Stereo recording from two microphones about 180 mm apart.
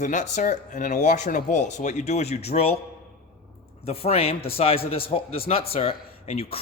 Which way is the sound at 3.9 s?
35° left (ahead or behind).